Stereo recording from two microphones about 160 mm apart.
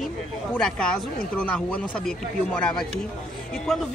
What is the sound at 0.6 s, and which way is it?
Speech, 5° left (ahead or behind).